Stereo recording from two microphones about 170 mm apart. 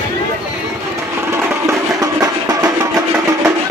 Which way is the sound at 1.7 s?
20° right (ahead or behind).